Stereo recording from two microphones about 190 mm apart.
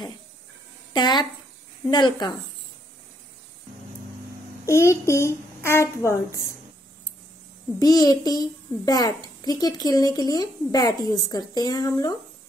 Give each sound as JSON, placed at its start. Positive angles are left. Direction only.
{"t": 0.9, "sound": "a child's voice", "side_deg": 25}
{"t": 4.6, "sound": "a child's voice", "side_deg": 15}
{"t": 7.8, "sound": "a child's voice", "side_deg": 20}